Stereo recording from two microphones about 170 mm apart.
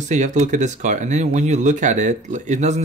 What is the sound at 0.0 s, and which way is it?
Speech, 45° right (ahead or behind).